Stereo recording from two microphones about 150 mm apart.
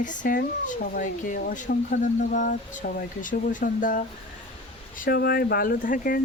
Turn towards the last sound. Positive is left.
turn(degrees=70)  # may be behind; listen again after turning